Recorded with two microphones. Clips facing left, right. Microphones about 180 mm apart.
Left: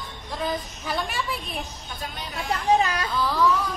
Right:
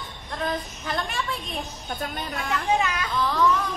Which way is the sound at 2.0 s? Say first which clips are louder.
Right 3 dB; 55° right (ahead or behind).